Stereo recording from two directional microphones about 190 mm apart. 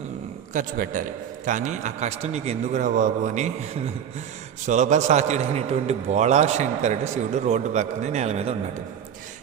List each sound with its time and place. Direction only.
0.5 s a man's voice: 45° right (ahead or behind)